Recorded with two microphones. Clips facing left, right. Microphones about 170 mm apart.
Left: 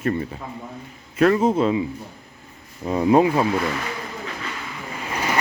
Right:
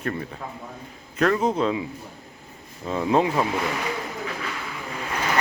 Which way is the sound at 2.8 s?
15° left (ahead or behind).